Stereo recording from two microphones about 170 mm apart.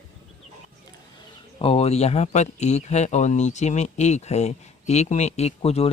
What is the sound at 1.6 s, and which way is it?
Speech, 35° left (ahead or behind).